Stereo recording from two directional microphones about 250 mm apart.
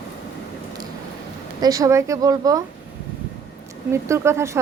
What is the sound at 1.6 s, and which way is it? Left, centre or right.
A woman's voice, centre.